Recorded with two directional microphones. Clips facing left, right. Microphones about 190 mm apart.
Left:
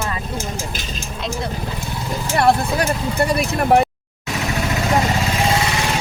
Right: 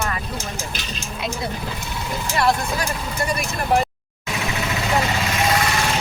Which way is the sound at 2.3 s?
60° left (ahead or behind).